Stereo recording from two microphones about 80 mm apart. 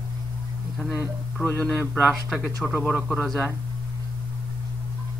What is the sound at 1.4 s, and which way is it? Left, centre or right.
Speech, left.